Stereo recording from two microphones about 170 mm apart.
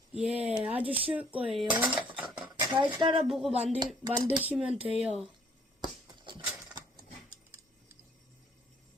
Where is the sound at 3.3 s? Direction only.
Centre (ahead or behind).